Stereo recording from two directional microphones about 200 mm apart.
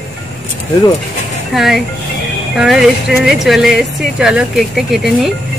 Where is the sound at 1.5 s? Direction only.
Centre (ahead or behind).